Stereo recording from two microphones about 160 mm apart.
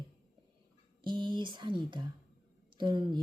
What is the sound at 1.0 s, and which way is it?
A woman's voice, 30° right (ahead or behind).